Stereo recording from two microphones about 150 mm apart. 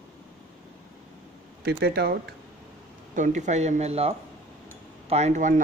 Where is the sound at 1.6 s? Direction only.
90° right.